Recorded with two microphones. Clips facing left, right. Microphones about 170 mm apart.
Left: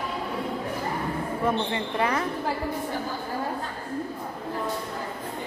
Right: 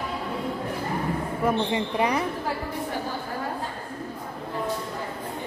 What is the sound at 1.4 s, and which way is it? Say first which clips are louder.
Speech: right 3 dB; 15° right (ahead or behind).